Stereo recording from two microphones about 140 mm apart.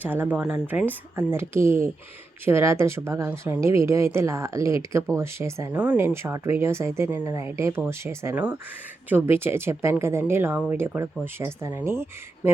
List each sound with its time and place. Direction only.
0.0 s speech: 15° right (ahead or behind)